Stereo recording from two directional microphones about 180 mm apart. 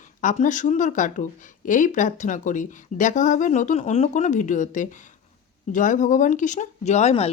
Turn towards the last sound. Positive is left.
turn(degrees=40)  # may be behind; listen again after turning